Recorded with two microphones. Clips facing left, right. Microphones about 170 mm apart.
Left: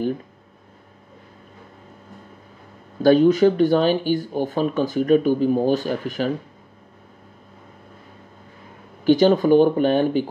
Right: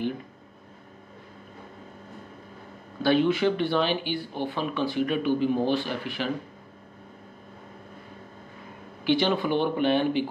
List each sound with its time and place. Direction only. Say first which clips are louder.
3.0 s speech: left 8 dB; 40° left (ahead or behind)
9.0 s speech: left 8 dB; 40° left (ahead or behind)